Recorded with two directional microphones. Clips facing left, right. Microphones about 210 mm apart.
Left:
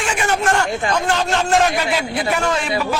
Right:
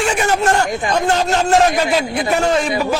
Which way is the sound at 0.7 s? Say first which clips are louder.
Right 2 dB; 15° right (ahead or behind).